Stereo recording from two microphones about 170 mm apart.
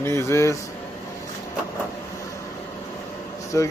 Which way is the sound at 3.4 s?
20° left (ahead or behind).